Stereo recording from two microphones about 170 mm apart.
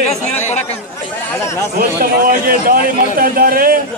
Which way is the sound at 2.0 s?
55° right (ahead or behind).